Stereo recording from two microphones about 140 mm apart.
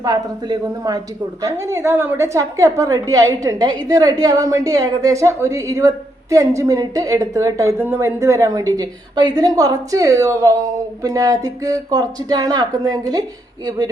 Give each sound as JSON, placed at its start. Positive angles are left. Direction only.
{"t": 0.0, "sound": "a woman's voice", "side_deg": -30}